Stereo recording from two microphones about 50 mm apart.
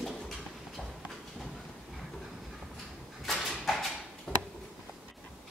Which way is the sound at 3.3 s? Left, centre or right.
Centre.